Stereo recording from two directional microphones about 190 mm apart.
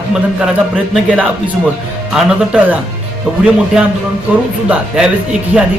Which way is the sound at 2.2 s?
5° right (ahead or behind).